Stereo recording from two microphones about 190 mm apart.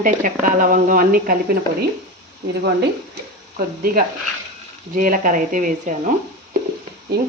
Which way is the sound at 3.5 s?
50° right (ahead or behind).